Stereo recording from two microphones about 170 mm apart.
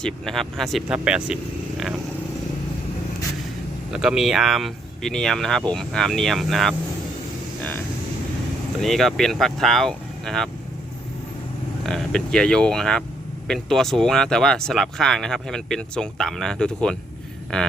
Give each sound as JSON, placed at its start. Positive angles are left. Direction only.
{"t": 0.0, "sound": "speech", "side_deg": 0}
{"t": 3.9, "sound": "speech", "side_deg": -5}
{"t": 8.8, "sound": "speech", "side_deg": 0}
{"t": 11.8, "sound": "speech", "side_deg": 0}